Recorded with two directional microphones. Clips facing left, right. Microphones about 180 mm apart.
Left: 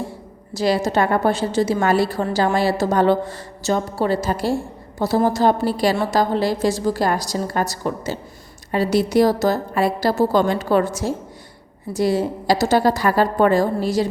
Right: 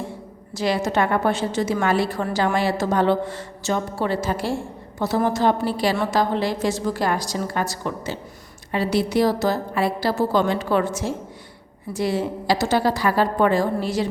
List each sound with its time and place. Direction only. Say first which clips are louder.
0.5 s a woman's voice: left 3 dB; 35° left (ahead or behind)